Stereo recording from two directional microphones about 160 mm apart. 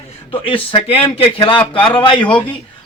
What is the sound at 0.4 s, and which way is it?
Speech, 35° left (ahead or behind).